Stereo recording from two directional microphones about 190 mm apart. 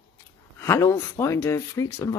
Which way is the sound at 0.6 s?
15° left (ahead or behind).